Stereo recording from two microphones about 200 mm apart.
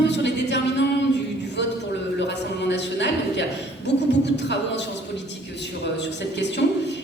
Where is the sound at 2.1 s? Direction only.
60° left (ahead or behind).